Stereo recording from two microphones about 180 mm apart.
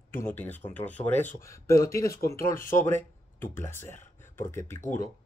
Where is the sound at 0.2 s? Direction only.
10° left (ahead or behind).